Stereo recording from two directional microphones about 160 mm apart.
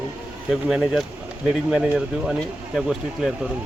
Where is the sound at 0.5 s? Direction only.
5° right (ahead or behind).